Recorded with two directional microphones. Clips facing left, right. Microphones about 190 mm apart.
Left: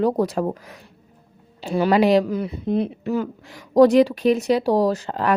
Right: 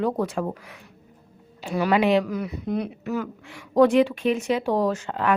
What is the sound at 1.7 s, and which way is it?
Speech, 35° left (ahead or behind).